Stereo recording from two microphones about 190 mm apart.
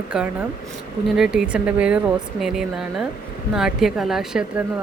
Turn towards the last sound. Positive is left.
turn(degrees=-5)  # may be behind; listen again after turning